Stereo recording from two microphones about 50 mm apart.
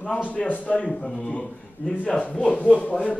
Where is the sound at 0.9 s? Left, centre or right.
Centre.